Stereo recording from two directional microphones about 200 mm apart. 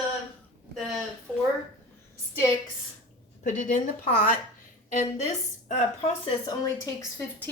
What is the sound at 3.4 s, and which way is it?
A woman's voice, 40° left (ahead or behind).